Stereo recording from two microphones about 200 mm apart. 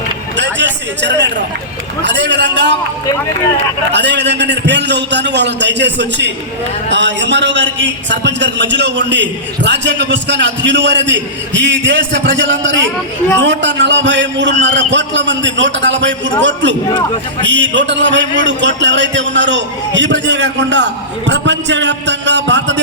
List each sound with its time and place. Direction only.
0.3 s a sound: 60° right (ahead or behind)
2.0 s a man's voice: 60° right (ahead or behind)
3.9 s a man's voice: 60° right (ahead or behind)